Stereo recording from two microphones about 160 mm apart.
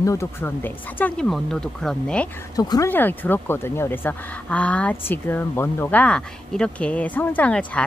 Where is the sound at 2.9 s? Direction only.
10° left (ahead or behind).